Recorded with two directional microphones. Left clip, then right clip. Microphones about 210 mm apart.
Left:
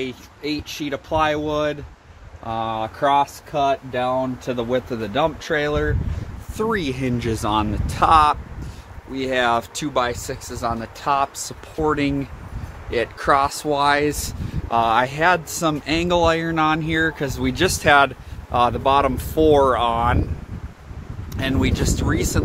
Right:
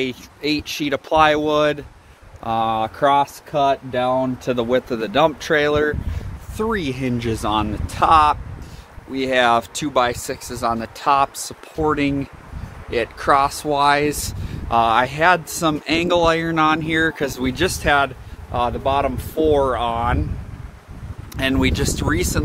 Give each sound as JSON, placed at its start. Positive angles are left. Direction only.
{"t": 0.0, "sound": "speech", "side_deg": -40}
{"t": 6.5, "sound": "speech", "side_deg": -5}
{"t": 9.1, "sound": "speech", "side_deg": -20}
{"t": 17.1, "sound": "speech", "side_deg": -25}
{"t": 17.6, "sound": "speech", "side_deg": 15}
{"t": 21.4, "sound": "speech", "side_deg": -30}